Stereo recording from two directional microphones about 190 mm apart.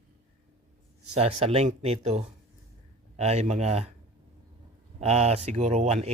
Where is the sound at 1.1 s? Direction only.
30° right (ahead or behind).